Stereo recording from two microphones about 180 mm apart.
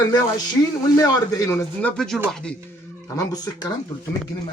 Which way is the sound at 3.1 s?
20° left (ahead or behind).